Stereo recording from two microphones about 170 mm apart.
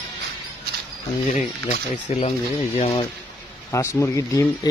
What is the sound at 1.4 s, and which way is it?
Speech, 40° left (ahead or behind).